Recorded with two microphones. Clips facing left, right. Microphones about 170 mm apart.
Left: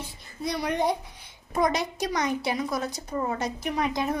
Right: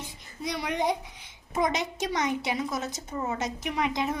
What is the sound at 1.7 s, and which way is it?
A woman's voice, 20° right (ahead or behind).